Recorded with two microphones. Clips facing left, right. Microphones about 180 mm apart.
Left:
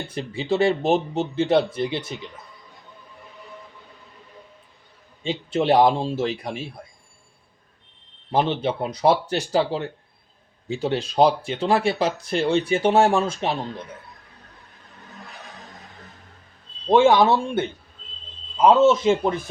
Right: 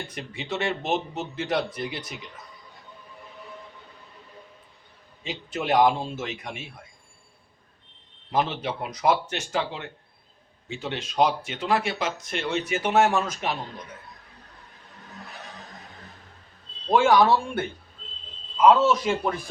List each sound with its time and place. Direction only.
0.1 s speech: 30° left (ahead or behind)
5.2 s speech: 30° left (ahead or behind)
8.3 s speech: 30° left (ahead or behind)
16.9 s speech: 25° left (ahead or behind)